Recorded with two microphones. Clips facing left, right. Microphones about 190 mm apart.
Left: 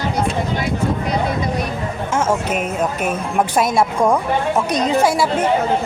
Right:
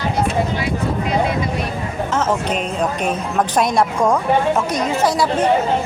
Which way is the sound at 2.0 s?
10° left (ahead or behind).